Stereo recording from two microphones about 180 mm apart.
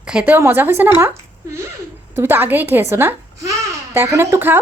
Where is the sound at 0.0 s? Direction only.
5° right (ahead or behind).